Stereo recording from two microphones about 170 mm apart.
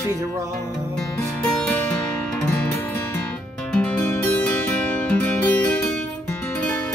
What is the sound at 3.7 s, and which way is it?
Music, 5° left (ahead or behind).